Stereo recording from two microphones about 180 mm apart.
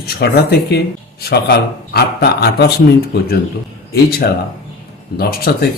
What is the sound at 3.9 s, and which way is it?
Speech, 60° left (ahead or behind).